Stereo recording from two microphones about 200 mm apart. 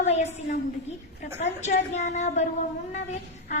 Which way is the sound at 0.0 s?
35° left (ahead or behind).